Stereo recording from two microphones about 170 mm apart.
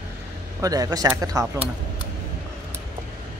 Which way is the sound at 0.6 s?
20° right (ahead or behind).